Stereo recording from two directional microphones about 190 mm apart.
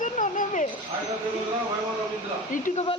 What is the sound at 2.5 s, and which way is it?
Speech, 45° left (ahead or behind).